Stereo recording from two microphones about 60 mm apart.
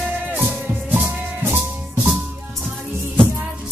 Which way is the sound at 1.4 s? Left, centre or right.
Right.